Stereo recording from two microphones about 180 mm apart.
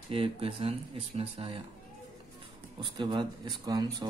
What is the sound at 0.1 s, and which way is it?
Speech, 30° right (ahead or behind).